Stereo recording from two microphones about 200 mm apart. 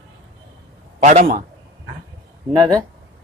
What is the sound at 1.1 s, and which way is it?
Speech, 35° right (ahead or behind).